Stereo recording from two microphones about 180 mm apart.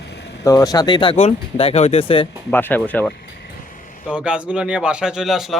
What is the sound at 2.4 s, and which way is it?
Speech, 10° left (ahead or behind).